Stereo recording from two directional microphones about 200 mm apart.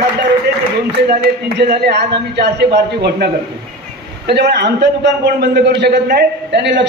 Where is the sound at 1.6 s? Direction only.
55° right (ahead or behind).